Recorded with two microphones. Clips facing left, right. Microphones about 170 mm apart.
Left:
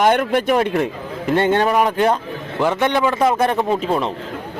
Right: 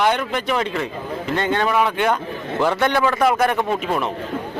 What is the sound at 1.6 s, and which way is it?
Speech, 40° left (ahead or behind).